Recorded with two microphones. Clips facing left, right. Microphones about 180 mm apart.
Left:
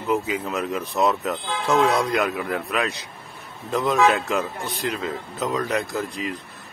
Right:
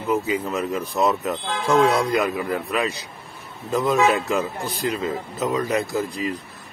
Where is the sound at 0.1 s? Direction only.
Centre (ahead or behind).